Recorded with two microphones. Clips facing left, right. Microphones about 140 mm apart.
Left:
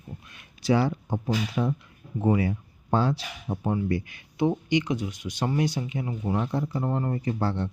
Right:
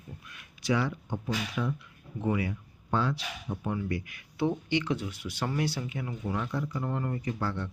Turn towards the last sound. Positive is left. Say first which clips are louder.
# left 5 dB
turn(degrees=30)  # may be behind; listen again after turning